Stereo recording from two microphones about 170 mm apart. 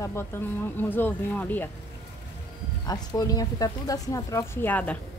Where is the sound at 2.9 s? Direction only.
20° left (ahead or behind).